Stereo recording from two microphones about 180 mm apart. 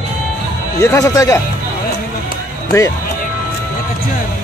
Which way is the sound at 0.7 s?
20° left (ahead or behind).